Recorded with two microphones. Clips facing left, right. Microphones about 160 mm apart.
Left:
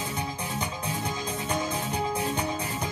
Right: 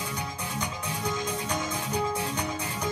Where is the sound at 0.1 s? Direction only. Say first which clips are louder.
Left 2 dB; 25° left (ahead or behind).